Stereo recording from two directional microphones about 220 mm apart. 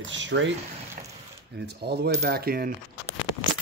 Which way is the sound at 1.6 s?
50° right (ahead or behind).